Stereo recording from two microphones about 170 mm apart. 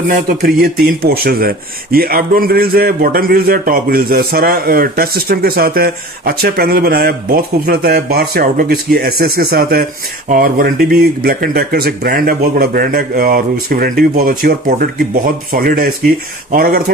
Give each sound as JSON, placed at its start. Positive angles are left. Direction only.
{"t": 0.6, "sound": "speech", "side_deg": -65}